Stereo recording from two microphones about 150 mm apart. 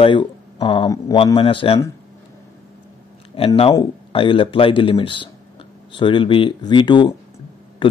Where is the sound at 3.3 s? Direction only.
35° left (ahead or behind).